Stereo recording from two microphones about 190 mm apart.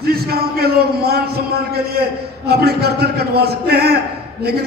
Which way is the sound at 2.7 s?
55° right (ahead or behind).